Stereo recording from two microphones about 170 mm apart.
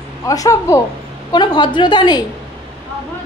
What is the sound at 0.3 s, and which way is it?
A woman's voice, 20° left (ahead or behind).